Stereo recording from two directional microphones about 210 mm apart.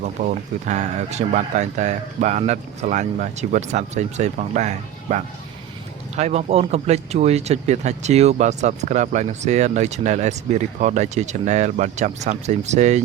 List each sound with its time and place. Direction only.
0.2 s speech: 35° right (ahead or behind)